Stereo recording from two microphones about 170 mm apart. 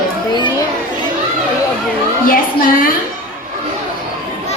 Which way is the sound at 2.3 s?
55° left (ahead or behind).